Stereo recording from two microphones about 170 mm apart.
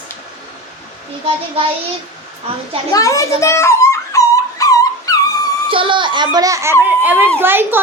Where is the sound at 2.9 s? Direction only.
20° left (ahead or behind).